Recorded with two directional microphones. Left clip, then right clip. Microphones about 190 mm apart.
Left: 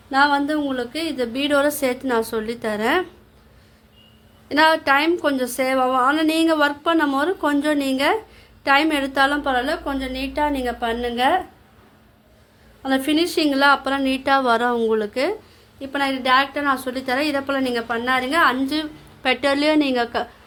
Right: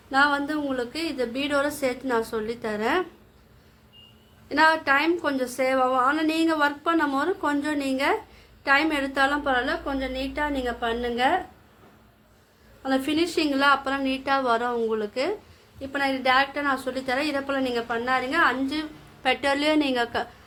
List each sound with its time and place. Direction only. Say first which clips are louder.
0.1 s a woman's voice: left 4 dB; 25° left (ahead or behind)
4.4 s a woman's voice: left 4 dB; 30° left (ahead or behind)
12.8 s a woman's voice: left 4 dB; 25° left (ahead or behind)